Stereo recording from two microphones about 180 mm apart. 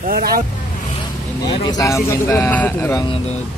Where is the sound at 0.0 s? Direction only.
55° right (ahead or behind).